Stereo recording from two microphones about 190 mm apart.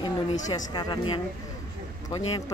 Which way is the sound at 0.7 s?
20° left (ahead or behind).